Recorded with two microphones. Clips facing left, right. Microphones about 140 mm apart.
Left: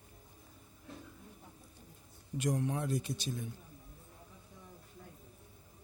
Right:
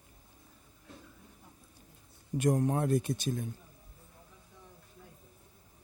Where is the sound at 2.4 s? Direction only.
50° right (ahead or behind).